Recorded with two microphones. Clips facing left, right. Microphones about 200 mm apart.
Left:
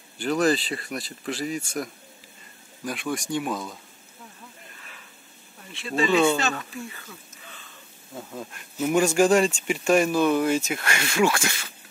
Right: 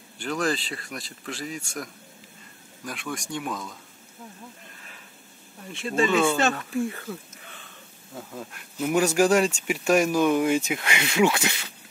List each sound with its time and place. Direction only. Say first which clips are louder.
0.2 s speech: left 5 dB; 5° left (ahead or behind)
5.7 s speech: even; 45° right (ahead or behind)
8.1 s speech: left 1 dB; centre (ahead or behind); by 11.6 s 15° right (ahead or behind)